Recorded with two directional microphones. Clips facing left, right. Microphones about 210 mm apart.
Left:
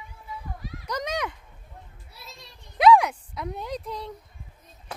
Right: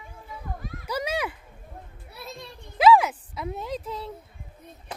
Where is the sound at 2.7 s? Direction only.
Centre (ahead or behind).